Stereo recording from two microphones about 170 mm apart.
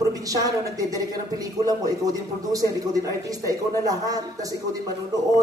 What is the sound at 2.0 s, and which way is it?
Speech, 20° right (ahead or behind).